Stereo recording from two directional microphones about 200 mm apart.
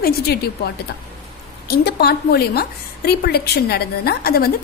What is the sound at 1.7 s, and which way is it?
A woman's voice, 55° left (ahead or behind).